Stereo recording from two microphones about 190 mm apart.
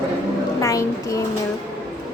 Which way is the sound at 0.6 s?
15° left (ahead or behind).